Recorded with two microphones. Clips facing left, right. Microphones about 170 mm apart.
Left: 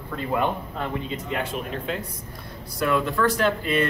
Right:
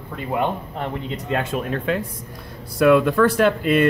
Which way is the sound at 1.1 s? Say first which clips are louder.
Right 4 dB; 60° right (ahead or behind).